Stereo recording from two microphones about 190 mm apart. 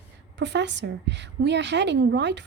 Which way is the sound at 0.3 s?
65° right (ahead or behind).